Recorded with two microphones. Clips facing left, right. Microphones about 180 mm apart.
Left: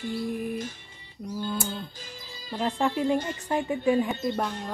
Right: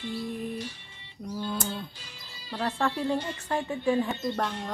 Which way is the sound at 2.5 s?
15° left (ahead or behind).